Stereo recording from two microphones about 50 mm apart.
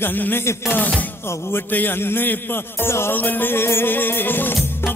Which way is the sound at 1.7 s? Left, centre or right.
Left.